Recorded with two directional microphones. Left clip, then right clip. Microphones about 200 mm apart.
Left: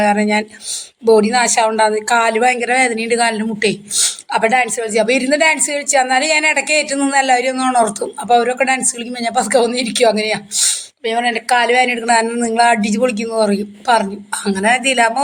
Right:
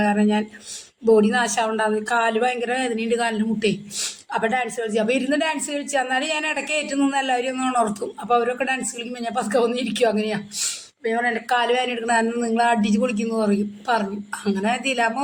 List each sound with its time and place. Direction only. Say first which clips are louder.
0.0 s speech: left 7 dB; 20° left (ahead or behind)
11.4 s speech: left 10 dB; 20° left (ahead or behind)